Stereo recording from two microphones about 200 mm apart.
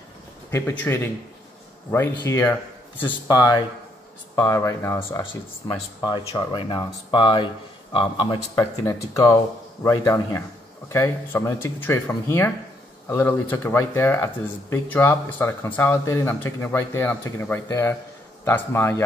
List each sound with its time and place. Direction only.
0.5 s speech: 10° left (ahead or behind)